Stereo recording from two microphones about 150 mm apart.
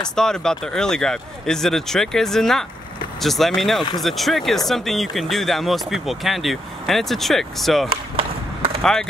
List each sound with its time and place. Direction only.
0.1 s speech: 5° left (ahead or behind)
7.9 s chop: 40° right (ahead or behind)